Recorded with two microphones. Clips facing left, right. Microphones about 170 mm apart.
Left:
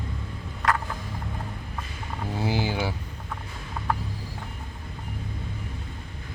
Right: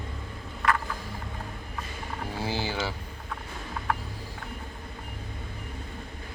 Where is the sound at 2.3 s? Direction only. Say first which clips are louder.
Left 4 dB; 15° left (ahead or behind).